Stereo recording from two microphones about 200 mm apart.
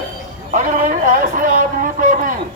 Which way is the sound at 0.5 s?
40° right (ahead or behind).